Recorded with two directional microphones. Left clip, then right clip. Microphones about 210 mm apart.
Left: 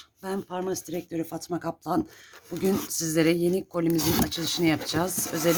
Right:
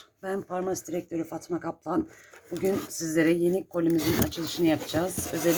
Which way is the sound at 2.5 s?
30° left (ahead or behind).